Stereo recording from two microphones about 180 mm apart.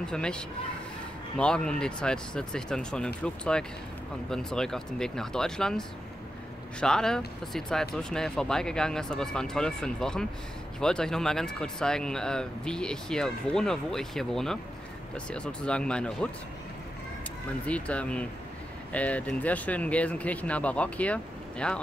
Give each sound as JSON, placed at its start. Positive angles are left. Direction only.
{"t": 0.0, "sound": "speech", "side_deg": 5}
{"t": 1.4, "sound": "speech", "side_deg": 5}
{"t": 4.3, "sound": "speech", "side_deg": 5}
{"t": 17.6, "sound": "speech", "side_deg": 5}